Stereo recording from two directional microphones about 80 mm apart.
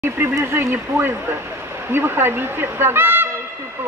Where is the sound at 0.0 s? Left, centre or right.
Right.